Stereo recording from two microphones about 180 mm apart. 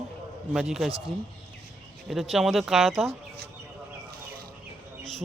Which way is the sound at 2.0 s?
Centre (ahead or behind).